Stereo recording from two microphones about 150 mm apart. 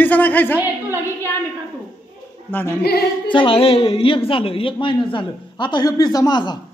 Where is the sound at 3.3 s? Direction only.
35° left (ahead or behind).